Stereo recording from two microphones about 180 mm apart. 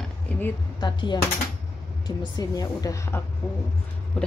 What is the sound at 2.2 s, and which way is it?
A woman's voice, 20° left (ahead or behind).